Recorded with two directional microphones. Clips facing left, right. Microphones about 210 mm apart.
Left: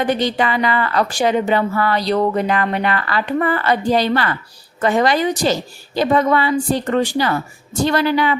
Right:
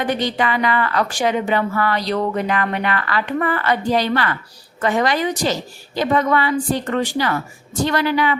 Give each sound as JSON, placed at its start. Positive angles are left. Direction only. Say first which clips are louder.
{"t": 0.2, "sound": "a woman's voice", "louder": "left 2 dB", "side_deg": 30}